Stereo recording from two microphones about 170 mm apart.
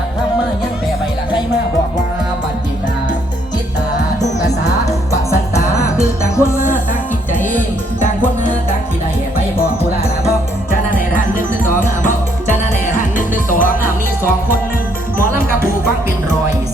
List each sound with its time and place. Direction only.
5.3 s music: 15° left (ahead or behind)
10.7 s music: 55° left (ahead or behind)
13.0 s music: 50° left (ahead or behind)